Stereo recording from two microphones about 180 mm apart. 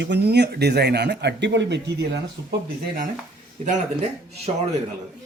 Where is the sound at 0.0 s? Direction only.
70° right (ahead or behind).